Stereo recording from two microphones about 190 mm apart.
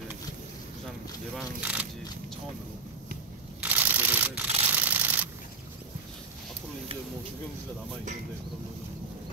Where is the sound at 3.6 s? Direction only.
10° right (ahead or behind).